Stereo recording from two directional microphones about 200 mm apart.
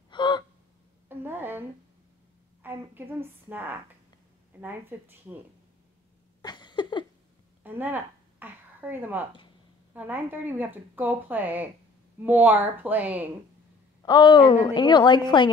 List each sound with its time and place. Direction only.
0.1 s gasp: 25° left (ahead or behind)
1.0 s a sound: 10° right (ahead or behind)
2.6 s speech: 10° right (ahead or behind)
6.4 s a sound: 20° left (ahead or behind)
7.6 s speech: 10° right (ahead or behind)
14.0 s a woman's voice: 20° left (ahead or behind)